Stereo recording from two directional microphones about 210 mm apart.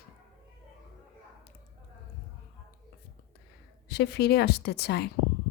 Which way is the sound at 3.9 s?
50° left (ahead or behind).